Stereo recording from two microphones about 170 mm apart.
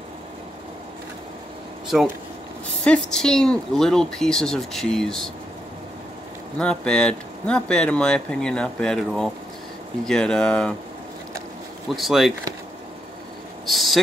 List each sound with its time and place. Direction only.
2.8 s speech: 5° left (ahead or behind)
6.6 s speech: 5° left (ahead or behind)
11.9 s speech: centre (ahead or behind)
13.7 s a sound: centre (ahead or behind)